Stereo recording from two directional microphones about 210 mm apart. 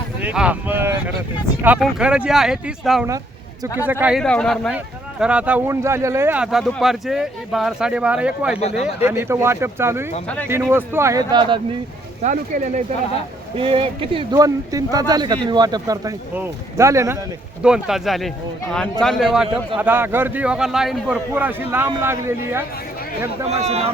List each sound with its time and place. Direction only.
0.2 s speech: 5° right (ahead or behind)
12.2 s speech: 35° right (ahead or behind)
13.6 s speech: 25° right (ahead or behind)
17.6 s speech: 5° right (ahead or behind)
23.5 s speech: 30° right (ahead or behind)